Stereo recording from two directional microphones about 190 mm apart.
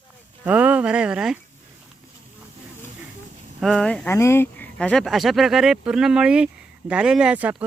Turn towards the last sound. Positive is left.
turn(degrees=-5)  # may be behind; listen again after turning